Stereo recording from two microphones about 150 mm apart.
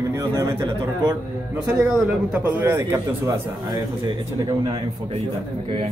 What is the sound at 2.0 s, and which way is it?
A man's voice, 10° right (ahead or behind).